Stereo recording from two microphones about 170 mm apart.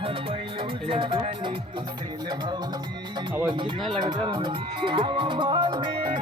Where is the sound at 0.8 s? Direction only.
30° right (ahead or behind).